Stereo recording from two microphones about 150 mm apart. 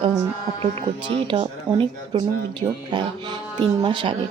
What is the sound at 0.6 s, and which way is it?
Speech, 40° right (ahead or behind).